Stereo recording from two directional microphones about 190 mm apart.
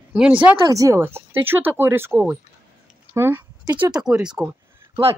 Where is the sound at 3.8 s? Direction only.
20° right (ahead or behind).